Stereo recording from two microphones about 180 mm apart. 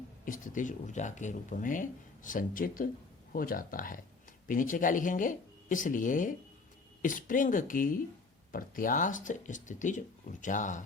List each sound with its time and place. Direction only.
0.3 s speech: 45° left (ahead or behind)